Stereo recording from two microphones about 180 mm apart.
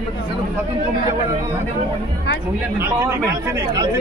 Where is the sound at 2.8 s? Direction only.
15° right (ahead or behind).